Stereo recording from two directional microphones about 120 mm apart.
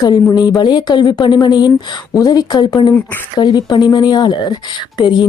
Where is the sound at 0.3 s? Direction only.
35° left (ahead or behind).